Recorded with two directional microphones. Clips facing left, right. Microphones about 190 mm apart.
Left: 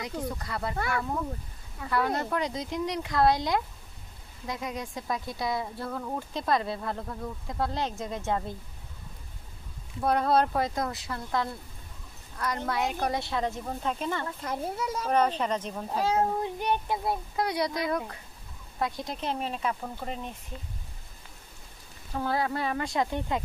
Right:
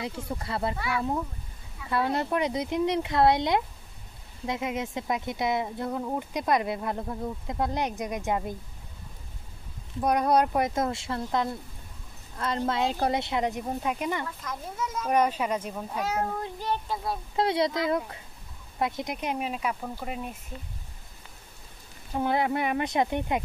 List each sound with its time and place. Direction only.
0.0 s speech: 25° right (ahead or behind)
0.7 s speech: 50° left (ahead or behind)
1.9 s speech: 25° right (ahead or behind)
9.9 s speech: 15° right (ahead or behind)
14.4 s a child's voice: 30° left (ahead or behind)
15.0 s speech: 10° right (ahead or behind)
15.9 s a child's voice: 30° left (ahead or behind)
17.4 s speech: 25° right (ahead or behind); by 20.3 s 5° right (ahead or behind)
22.1 s speech: 20° right (ahead or behind)